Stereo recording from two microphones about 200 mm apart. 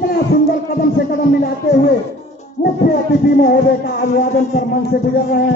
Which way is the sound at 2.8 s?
45° left (ahead or behind).